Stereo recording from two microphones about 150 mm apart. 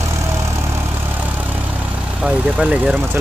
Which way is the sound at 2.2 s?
5° right (ahead or behind).